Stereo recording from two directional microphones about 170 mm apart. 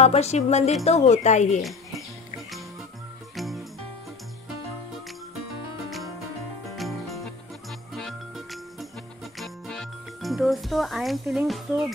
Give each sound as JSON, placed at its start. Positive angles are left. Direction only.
{"t": 0.0, "sound": "music", "side_deg": 40}
{"t": 0.8, "sound": "speech", "side_deg": 40}
{"t": 1.6, "sound": "music", "side_deg": 0}
{"t": 3.3, "sound": "music", "side_deg": 0}
{"t": 6.7, "sound": "music", "side_deg": 0}
{"t": 9.4, "sound": "jingle", "side_deg": 0}